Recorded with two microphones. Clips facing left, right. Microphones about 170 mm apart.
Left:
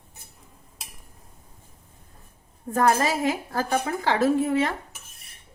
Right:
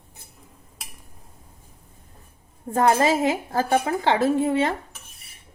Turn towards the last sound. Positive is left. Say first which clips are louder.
# right 1 dB
turn(degrees=-25)  # may be behind; listen again after turning